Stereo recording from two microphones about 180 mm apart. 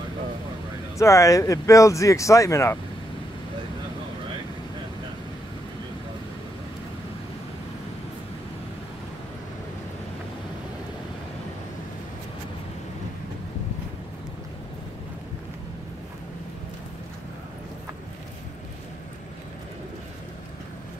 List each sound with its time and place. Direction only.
0.9 s speech: 15° left (ahead or behind)